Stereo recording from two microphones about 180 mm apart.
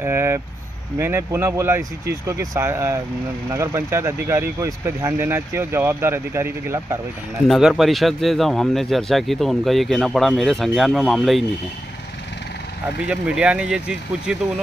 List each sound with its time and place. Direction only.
0.0 s vehicle: 15° right (ahead or behind)
0.9 s speech: 15° right (ahead or behind)
7.4 s speech: centre (ahead or behind)
13.0 s speech: 5° right (ahead or behind)